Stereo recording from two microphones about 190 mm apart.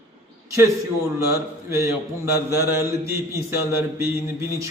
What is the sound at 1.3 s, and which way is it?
A man's voice, 15° right (ahead or behind).